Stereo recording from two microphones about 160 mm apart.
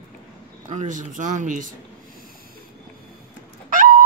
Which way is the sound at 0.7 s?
50° right (ahead or behind).